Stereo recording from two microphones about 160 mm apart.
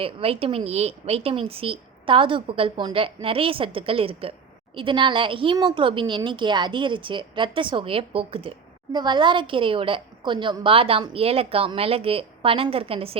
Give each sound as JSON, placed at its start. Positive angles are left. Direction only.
{"t": 0.0, "sound": "a woman's voice", "side_deg": -35}